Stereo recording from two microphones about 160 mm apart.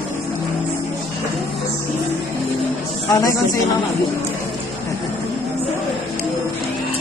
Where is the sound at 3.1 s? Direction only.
25° left (ahead or behind).